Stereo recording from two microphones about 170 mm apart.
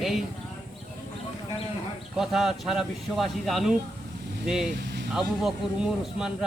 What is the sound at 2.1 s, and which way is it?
Speech, centre (ahead or behind).